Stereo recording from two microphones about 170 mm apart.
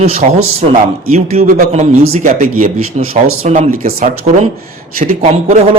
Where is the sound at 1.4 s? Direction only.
50° right (ahead or behind).